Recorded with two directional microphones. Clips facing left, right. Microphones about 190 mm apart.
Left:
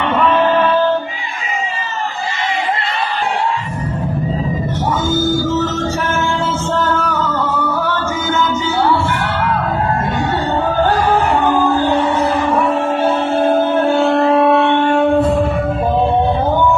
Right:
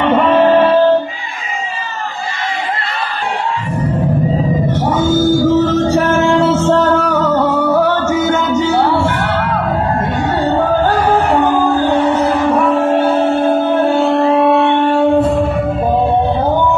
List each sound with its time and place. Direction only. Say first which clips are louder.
0.0 s music: right 4 dB; 50° right (ahead or behind)
0.4 s a sound: right 7 dB; 30° right (ahead or behind)
6.0 s music: right 7 dB; 70° right (ahead or behind)
14.0 s music: right 1 dB; 5° right (ahead or behind)